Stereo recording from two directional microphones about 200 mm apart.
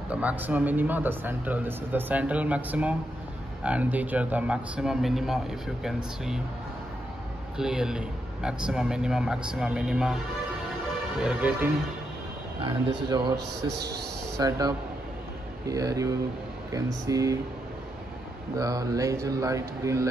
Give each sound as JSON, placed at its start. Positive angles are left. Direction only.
{"t": 0.1, "sound": "speech", "side_deg": -5}
{"t": 7.5, "sound": "speech", "side_deg": -5}
{"t": 11.1, "sound": "speech", "side_deg": -5}
{"t": 13.0, "sound": "speech", "side_deg": -20}
{"t": 13.6, "sound": "a man's voice", "side_deg": -55}
{"t": 14.3, "sound": "speech", "side_deg": -20}
{"t": 18.6, "sound": "speech", "side_deg": -15}